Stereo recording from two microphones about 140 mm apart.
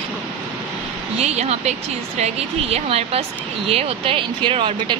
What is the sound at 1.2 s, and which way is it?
A woman's voice, 50° right (ahead or behind).